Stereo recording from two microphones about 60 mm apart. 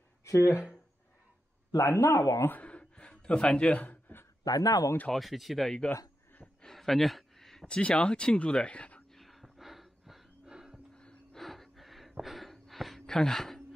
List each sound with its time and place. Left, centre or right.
0.2 s speech: left
1.8 s a man's voice: left
2.6 s gasp: centre
3.8 s a sound: left
4.5 s speech: left
5.1 s speech: centre
6.6 s a sound: centre
7.6 s speech: centre
9.1 s a sound: centre
11.3 s gasp: centre